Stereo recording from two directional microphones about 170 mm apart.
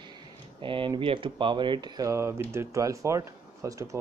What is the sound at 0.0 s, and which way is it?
Speech, 30° right (ahead or behind).